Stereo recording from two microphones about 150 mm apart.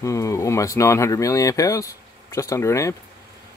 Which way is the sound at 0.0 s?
20° left (ahead or behind).